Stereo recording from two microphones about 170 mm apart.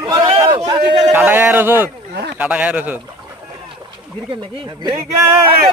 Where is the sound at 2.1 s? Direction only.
70° right (ahead or behind).